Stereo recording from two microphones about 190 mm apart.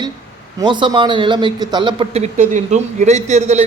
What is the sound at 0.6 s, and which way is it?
A man's voice, 25° right (ahead or behind).